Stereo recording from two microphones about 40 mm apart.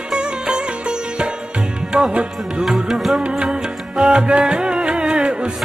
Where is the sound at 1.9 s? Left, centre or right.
Right.